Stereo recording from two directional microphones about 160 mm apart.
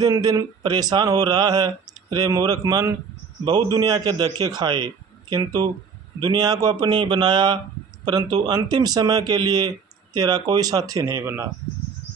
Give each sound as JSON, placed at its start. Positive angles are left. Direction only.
{"t": 0.0, "sound": "speech", "side_deg": -25}